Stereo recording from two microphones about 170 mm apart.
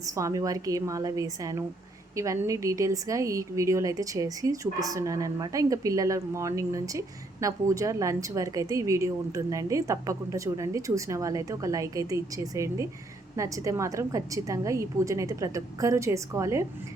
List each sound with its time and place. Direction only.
0.0 s a woman's voice: 20° right (ahead or behind)